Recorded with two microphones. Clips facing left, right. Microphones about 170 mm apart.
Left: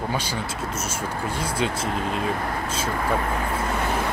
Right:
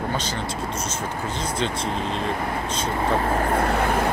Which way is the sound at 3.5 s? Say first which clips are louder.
Right 5 dB; 60° right (ahead or behind).